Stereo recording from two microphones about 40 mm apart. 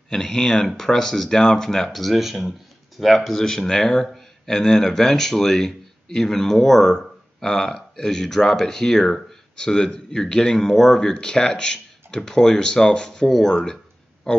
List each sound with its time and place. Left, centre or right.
0.1 s speech: centre